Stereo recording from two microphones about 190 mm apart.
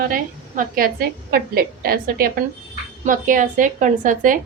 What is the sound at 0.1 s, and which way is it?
A woman's voice, 45° right (ahead or behind).